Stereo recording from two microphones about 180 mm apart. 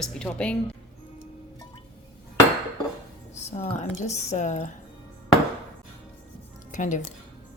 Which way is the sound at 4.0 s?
40° left (ahead or behind).